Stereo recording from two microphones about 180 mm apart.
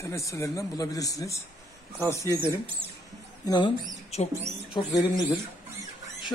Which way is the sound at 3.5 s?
25° left (ahead or behind).